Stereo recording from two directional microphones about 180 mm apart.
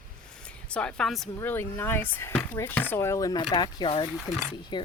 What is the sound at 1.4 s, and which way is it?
Speech, 10° left (ahead or behind).